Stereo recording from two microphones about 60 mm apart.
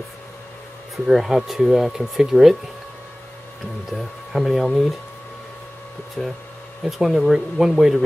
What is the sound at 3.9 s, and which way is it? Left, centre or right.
Speech, centre.